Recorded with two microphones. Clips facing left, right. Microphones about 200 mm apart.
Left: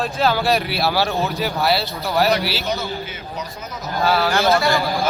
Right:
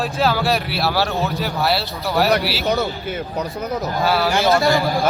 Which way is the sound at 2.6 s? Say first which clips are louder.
Right 5 dB; 60° right (ahead or behind).